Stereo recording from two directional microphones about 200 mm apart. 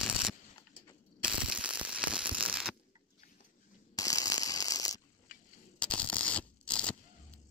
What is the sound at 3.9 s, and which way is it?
Ratchet, 15° left (ahead or behind).